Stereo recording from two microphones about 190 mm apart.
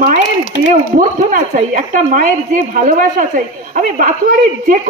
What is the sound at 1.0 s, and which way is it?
A woman's voice, 45° right (ahead or behind).